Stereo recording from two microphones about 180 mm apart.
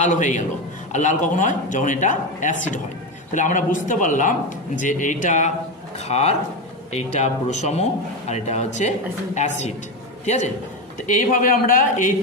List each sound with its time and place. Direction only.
0.0 s speech: 45° left (ahead or behind)